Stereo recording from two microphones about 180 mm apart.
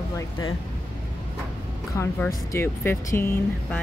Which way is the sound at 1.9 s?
15° left (ahead or behind).